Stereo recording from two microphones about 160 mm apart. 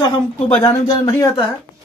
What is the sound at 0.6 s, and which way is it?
Speech, 25° left (ahead or behind).